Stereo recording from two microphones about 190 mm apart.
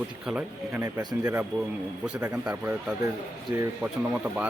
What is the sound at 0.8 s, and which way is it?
Speech, 20° right (ahead or behind).